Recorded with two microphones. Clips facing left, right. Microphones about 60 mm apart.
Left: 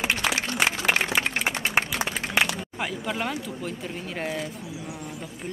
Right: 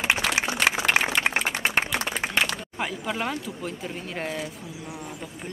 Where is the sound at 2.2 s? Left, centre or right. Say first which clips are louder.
Left 2 dB; centre.